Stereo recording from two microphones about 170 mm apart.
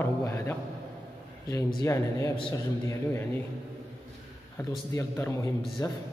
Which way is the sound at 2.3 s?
30° left (ahead or behind).